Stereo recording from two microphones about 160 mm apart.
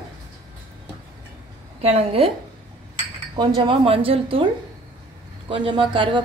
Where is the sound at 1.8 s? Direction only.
40° right (ahead or behind).